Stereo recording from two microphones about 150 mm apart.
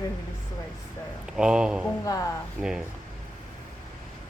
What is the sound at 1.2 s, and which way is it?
Speech, 5° right (ahead or behind).